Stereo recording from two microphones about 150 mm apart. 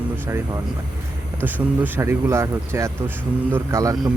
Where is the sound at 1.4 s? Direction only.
15° right (ahead or behind).